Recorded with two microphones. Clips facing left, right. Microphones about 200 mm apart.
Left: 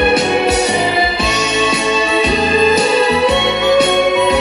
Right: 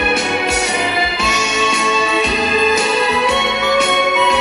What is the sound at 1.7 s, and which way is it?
Music, 35° left (ahead or behind).